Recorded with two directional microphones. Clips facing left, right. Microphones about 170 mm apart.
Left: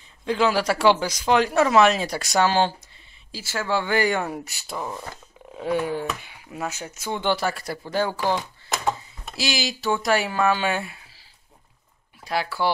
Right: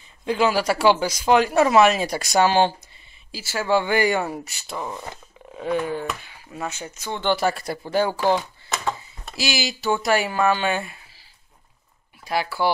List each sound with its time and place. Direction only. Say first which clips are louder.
0.2 s speech: right 1 dB; 10° right (ahead or behind)
3.6 s speech: right 3 dB; 15° right (ahead or behind)
4.3 s speech: even; centre (ahead or behind)
7.3 s speech: right 4 dB; 20° right (ahead or behind)
9.3 s speech: right 1 dB; centre (ahead or behind)
12.3 s speech: right 2 dB; 5° right (ahead or behind)